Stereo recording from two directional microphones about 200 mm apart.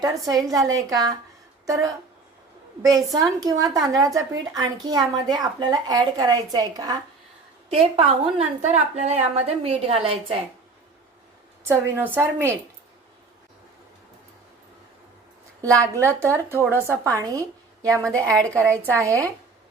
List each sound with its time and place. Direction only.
0.0 s a woman's voice: 20° right (ahead or behind)
2.8 s a woman's voice: 20° right (ahead or behind)
11.7 s a woman's voice: 10° right (ahead or behind)
15.6 s a woman's voice: 15° right (ahead or behind)
18.2 s a woman's voice: 5° left (ahead or behind)